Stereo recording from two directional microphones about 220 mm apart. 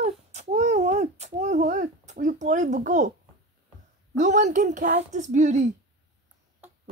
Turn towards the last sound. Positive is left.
turn(degrees=-35)  # may be behind; listen again after turning